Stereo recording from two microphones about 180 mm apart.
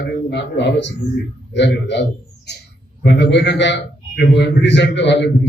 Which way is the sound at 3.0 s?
75° left (ahead or behind).